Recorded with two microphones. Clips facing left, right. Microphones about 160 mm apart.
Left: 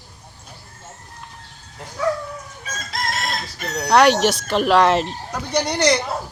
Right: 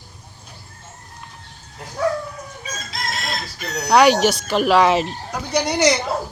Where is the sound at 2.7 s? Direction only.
55° left (ahead or behind).